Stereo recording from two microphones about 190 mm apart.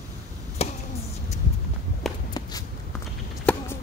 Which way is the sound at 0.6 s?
30° left (ahead or behind).